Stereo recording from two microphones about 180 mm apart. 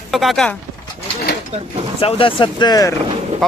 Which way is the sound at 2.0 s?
30° left (ahead or behind).